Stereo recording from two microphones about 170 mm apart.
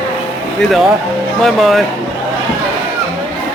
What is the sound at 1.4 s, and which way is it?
Speech, centre (ahead or behind).